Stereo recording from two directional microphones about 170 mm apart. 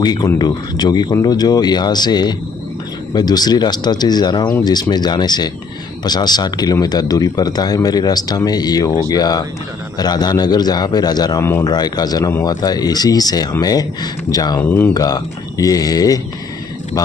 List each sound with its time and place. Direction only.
0.0 s a man's voice: 25° left (ahead or behind)
14.6 s a man's voice: 15° left (ahead or behind)